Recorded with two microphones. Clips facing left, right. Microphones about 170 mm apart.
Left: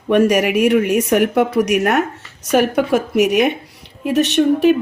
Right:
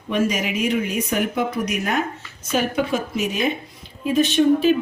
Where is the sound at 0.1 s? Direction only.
65° left (ahead or behind).